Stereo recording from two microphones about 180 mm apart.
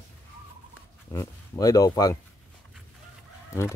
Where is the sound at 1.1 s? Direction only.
20° left (ahead or behind).